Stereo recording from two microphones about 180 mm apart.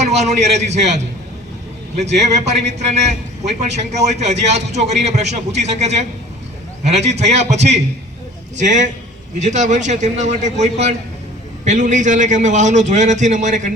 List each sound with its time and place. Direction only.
0.0 s a man's voice: 40° right (ahead or behind)